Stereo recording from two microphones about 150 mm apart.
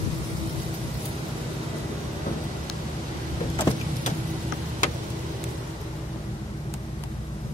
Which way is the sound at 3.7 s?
25° left (ahead or behind).